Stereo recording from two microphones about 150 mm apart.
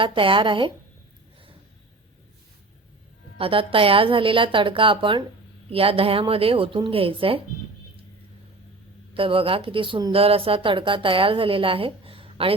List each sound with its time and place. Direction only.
0.0 s speech: 35° right (ahead or behind)
3.3 s speech: 35° right (ahead or behind)
9.1 s speech: 35° right (ahead or behind)